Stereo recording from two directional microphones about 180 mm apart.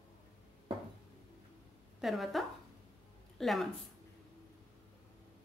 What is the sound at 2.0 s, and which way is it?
Speech, centre (ahead or behind).